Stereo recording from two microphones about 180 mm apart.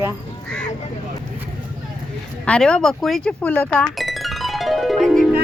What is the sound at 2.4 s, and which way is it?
Speech, 5° left (ahead or behind).